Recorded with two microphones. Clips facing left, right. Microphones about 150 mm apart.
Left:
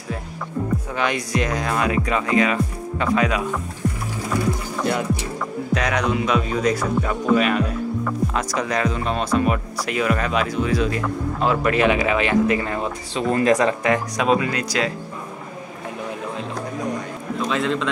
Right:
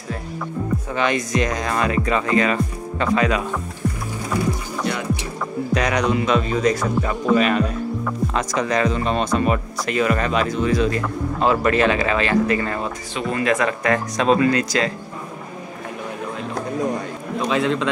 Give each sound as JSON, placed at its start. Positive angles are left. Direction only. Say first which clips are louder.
{"t": 0.9, "sound": "speech", "louder": "right 3 dB", "side_deg": 10}
{"t": 5.8, "sound": "speech", "louder": "right 2 dB", "side_deg": 0}
{"t": 13.1, "sound": "speech", "louder": "left 3 dB", "side_deg": 40}
{"t": 13.7, "sound": "speech", "louder": "left 1 dB", "side_deg": 15}
{"t": 17.5, "sound": "speech", "louder": "right 3 dB", "side_deg": -5}